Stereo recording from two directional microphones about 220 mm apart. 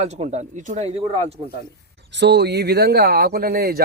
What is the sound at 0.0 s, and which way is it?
Speech, 30° right (ahead or behind).